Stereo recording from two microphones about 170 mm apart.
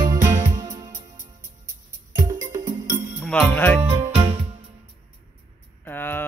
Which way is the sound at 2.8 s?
50° right (ahead or behind).